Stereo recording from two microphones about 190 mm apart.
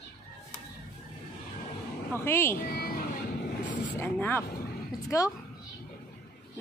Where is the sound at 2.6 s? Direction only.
50° left (ahead or behind).